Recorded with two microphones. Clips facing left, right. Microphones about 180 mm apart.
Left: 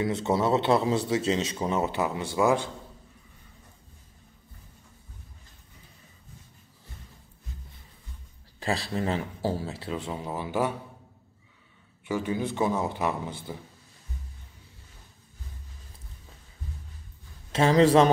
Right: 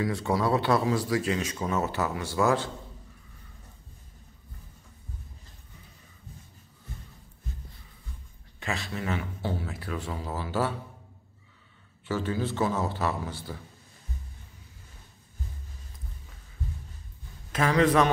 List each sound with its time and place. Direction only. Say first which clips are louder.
0.0 s speech: left 2 dB; 25° left (ahead or behind)
8.5 s speech: left 5 dB; 35° left (ahead or behind); by 10.7 s 15° left (ahead or behind)
12.1 s a man's voice: left 1 dB; 15° left (ahead or behind)
17.5 s speech: left 3 dB; 25° left (ahead or behind)